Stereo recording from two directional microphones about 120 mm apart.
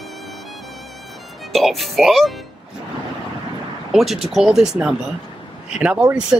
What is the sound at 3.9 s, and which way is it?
Speech, centre (ahead or behind).